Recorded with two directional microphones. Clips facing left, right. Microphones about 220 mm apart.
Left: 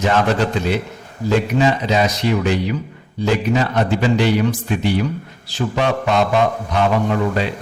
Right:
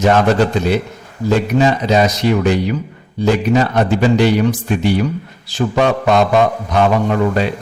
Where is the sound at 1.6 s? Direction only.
45° right (ahead or behind).